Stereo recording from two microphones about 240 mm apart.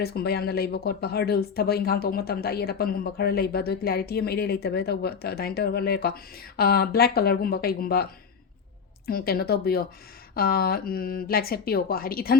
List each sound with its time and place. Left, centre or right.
0.0 s speech: left
9.0 s speech: left